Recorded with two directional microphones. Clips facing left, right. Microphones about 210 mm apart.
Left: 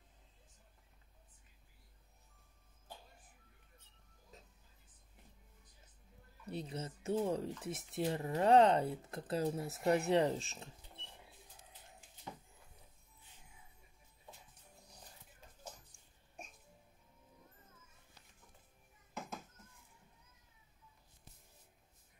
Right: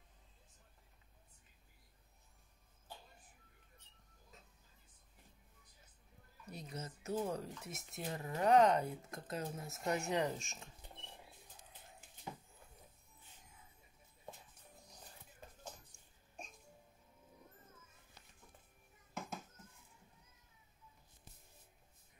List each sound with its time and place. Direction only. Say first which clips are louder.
6.4 s speech: left 5 dB; 30° left (ahead or behind)